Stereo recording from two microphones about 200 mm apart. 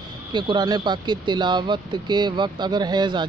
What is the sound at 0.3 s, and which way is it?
A man's voice, 25° right (ahead or behind).